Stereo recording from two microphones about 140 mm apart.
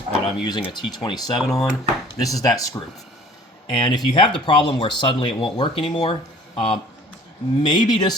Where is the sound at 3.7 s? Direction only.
30° left (ahead or behind).